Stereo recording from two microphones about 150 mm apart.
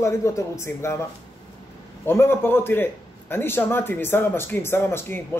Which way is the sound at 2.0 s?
15° left (ahead or behind).